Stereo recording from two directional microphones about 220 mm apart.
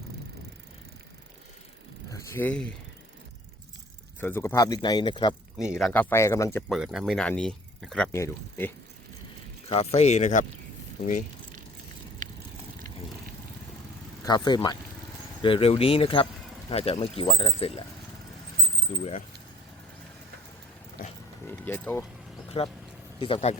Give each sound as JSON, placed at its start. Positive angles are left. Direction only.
{"t": 2.0, "sound": "speech", "side_deg": 10}
{"t": 4.2, "sound": "speech", "side_deg": 10}
{"t": 5.5, "sound": "speech", "side_deg": -5}
{"t": 9.6, "sound": "speech", "side_deg": 30}
{"t": 14.3, "sound": "speech", "side_deg": 20}
{"t": 18.9, "sound": "speech", "side_deg": 35}
{"t": 21.4, "sound": "speech", "side_deg": 10}
{"t": 22.5, "sound": "speech", "side_deg": 25}